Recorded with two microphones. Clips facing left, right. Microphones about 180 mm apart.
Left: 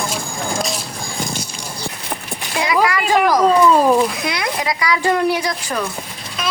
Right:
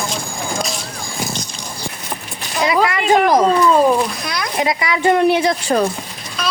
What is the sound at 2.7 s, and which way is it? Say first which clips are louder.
Speech: right 1 dB; 25° right (ahead or behind).